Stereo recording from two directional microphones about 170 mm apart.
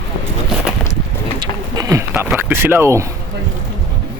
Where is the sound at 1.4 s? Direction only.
20° right (ahead or behind).